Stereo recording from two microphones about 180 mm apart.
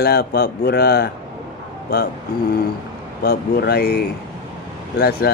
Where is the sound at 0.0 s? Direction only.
60° left (ahead or behind).